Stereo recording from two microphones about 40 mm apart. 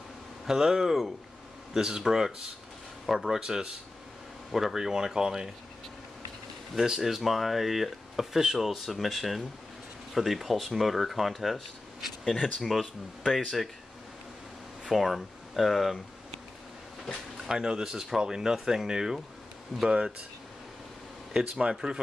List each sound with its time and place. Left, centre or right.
0.5 s speech: centre
6.7 s speech: centre
14.9 s speech: centre
17.5 s speech: centre
21.3 s speech: right